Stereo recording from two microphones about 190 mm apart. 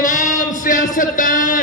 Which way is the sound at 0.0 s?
40° left (ahead or behind).